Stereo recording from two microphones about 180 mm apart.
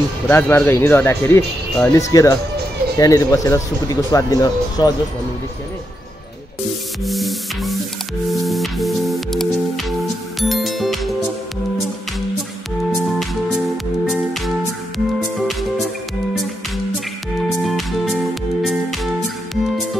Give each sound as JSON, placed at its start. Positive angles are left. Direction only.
{"t": 0.3, "sound": "speech", "side_deg": 10}
{"t": 7.1, "sound": "music", "side_deg": 0}
{"t": 12.9, "sound": "music", "side_deg": 0}
{"t": 15.3, "sound": "music", "side_deg": 0}
{"t": 17.6, "sound": "music", "side_deg": 0}